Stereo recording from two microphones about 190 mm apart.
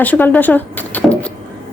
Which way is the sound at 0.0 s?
10° left (ahead or behind).